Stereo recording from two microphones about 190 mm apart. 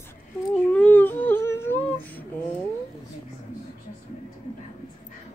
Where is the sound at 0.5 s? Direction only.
10° left (ahead or behind).